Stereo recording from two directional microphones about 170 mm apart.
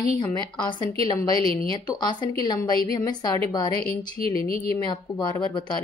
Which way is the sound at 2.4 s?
25° left (ahead or behind).